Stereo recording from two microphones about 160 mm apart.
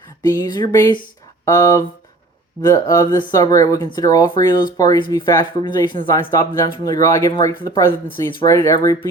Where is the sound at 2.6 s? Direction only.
20° left (ahead or behind).